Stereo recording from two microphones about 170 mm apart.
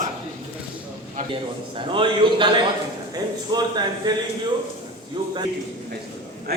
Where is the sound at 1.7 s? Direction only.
30° right (ahead or behind).